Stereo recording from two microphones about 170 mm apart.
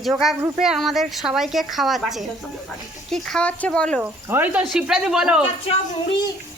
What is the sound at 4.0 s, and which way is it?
A woman's voice, 10° right (ahead or behind).